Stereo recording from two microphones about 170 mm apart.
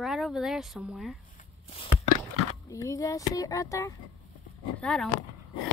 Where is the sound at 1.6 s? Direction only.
35° left (ahead or behind).